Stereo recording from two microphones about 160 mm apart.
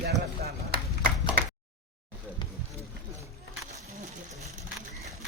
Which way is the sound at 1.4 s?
70° right (ahead or behind).